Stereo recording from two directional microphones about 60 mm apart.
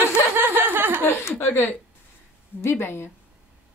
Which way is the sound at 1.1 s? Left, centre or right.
Left.